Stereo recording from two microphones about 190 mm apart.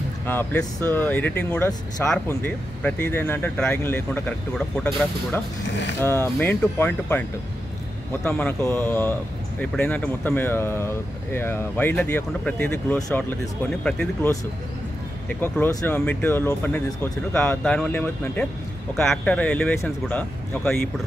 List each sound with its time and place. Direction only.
0.3 s speech: 10° left (ahead or behind)
5.7 s speech: 70° left (ahead or behind)
5.9 s speech: 15° left (ahead or behind)